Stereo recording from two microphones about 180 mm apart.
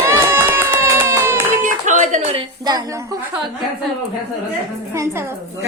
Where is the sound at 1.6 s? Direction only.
45° right (ahead or behind).